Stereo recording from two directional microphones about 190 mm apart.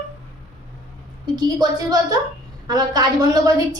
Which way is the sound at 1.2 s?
20° right (ahead or behind).